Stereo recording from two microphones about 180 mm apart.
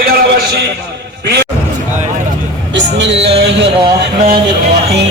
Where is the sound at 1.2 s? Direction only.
70° right (ahead or behind).